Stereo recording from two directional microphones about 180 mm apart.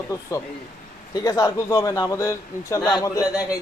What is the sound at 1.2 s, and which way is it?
A man's voice, 15° left (ahead or behind).